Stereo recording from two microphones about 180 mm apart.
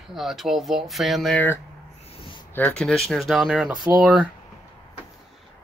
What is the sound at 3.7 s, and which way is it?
Speech, 25° right (ahead or behind).